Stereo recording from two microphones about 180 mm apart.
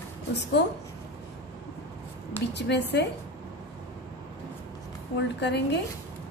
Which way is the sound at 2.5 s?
70° left (ahead or behind).